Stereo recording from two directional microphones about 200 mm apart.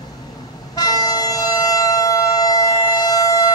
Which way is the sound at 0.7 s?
20° left (ahead or behind).